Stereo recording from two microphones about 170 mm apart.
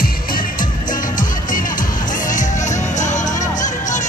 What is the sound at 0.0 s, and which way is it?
Music, 55° left (ahead or behind).